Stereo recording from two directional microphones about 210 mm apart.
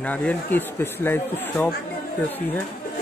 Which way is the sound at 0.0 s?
5° left (ahead or behind).